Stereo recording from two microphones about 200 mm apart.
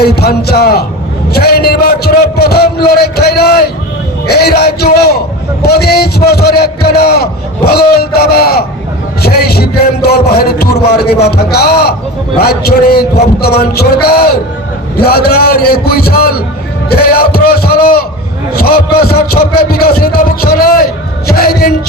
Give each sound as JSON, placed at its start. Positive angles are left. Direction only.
{"t": 0.0, "sound": "a man's voice", "side_deg": 50}